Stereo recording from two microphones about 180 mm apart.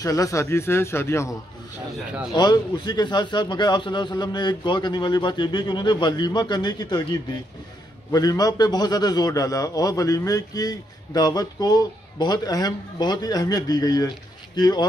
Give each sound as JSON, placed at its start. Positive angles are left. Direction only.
{"t": 0.0, "sound": "speech", "side_deg": 20}
{"t": 2.3, "sound": "a man's voice", "side_deg": 25}
{"t": 8.1, "sound": "a man's voice", "side_deg": 20}